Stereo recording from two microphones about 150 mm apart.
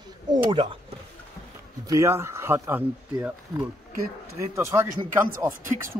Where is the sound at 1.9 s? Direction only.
20° right (ahead or behind).